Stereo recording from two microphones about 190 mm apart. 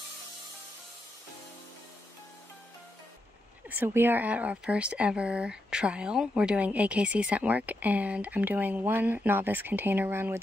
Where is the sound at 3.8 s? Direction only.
10° right (ahead or behind).